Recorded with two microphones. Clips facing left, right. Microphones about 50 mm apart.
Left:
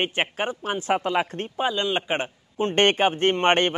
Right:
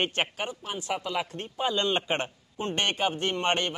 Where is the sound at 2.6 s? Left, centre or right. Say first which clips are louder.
Left 8 dB; left.